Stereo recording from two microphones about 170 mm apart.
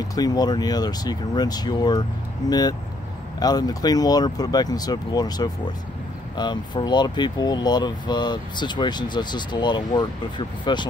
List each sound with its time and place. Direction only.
0.0 s speech: 20° left (ahead or behind)
3.3 s speech: 20° left (ahead or behind)